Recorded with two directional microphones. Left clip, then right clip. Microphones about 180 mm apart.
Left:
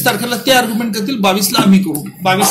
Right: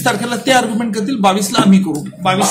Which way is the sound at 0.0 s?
10° right (ahead or behind).